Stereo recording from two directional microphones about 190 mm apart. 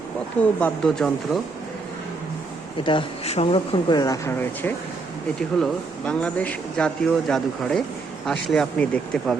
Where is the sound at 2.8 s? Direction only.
25° left (ahead or behind).